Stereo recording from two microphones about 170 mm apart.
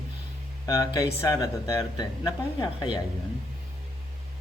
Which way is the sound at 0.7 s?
20° left (ahead or behind).